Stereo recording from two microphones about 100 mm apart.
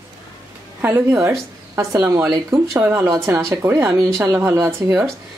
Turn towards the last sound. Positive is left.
turn(degrees=-30)  # may be behind; listen again after turning